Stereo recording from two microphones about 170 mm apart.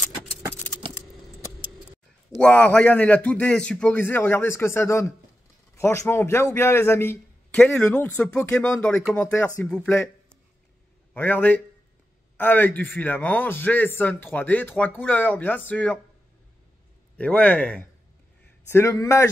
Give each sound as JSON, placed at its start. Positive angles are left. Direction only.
{"t": 2.3, "sound": "a man's voice", "side_deg": 5}
{"t": 17.2, "sound": "a man's voice", "side_deg": 10}